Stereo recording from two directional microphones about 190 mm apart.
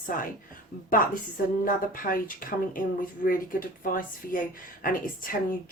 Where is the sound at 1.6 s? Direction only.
50° left (ahead or behind).